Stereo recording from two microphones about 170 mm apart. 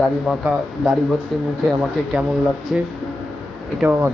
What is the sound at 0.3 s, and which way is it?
Speech, centre (ahead or behind).